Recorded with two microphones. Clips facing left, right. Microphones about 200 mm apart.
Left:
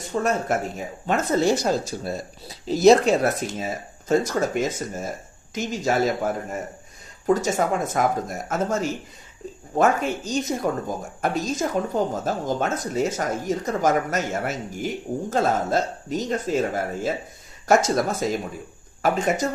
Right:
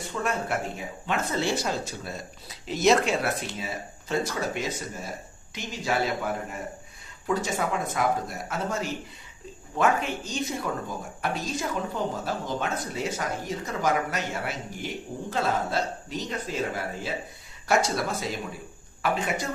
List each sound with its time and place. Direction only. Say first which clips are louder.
0.0 s speech: left 6 dB; 40° left (ahead or behind)